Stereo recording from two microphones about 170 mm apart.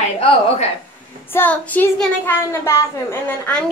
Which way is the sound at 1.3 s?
10° left (ahead or behind).